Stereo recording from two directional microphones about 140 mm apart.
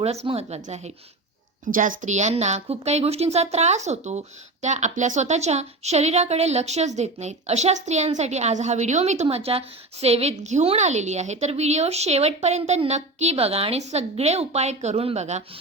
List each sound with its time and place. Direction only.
0.0 s a woman's voice: 50° right (ahead or behind)
1.7 s a woman's voice: 70° right (ahead or behind); by 15.4 s 50° right (ahead or behind)